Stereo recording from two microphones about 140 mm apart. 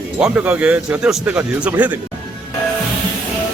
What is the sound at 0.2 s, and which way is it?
Speech, 10° right (ahead or behind).